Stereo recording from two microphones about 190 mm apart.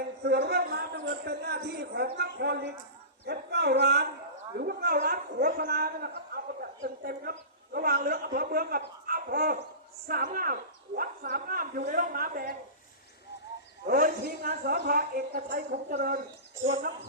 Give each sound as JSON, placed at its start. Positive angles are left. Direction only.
{"t": 0.2, "sound": "a man's voice", "side_deg": -60}
{"t": 13.8, "sound": "speech", "side_deg": -50}
{"t": 16.6, "sound": "speech", "side_deg": -65}